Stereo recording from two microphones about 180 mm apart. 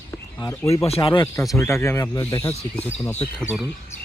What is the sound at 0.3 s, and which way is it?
Speech, 15° left (ahead or behind).